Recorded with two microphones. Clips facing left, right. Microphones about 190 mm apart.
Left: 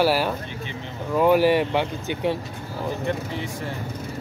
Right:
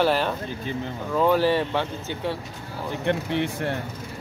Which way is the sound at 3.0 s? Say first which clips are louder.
Right 3 dB; 65° right (ahead or behind).